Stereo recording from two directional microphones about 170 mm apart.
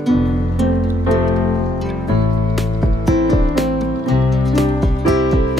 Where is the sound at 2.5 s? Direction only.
Centre (ahead or behind).